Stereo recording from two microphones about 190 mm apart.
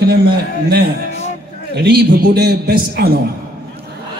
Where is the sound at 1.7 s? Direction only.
60° right (ahead or behind).